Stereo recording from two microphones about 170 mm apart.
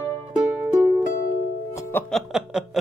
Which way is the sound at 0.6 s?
10° right (ahead or behind).